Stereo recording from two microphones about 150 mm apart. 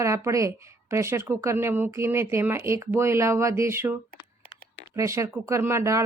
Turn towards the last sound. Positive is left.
turn(degrees=-20)  # may be behind; listen again after turning